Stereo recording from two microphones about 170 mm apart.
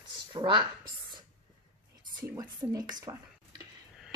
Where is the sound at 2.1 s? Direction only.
20° right (ahead or behind).